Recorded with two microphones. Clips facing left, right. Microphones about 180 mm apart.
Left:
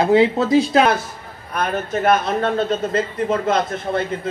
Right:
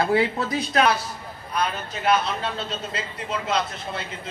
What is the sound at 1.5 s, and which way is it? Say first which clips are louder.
A man's voice: left 6 dB; 50° left (ahead or behind).